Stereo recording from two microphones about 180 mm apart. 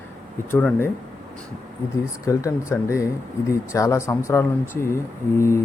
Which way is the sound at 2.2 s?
15° left (ahead or behind).